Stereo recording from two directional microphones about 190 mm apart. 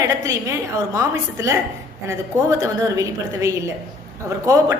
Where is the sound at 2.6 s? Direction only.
15° right (ahead or behind).